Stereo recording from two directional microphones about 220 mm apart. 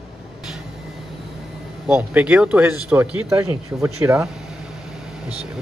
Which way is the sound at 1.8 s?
5° right (ahead or behind).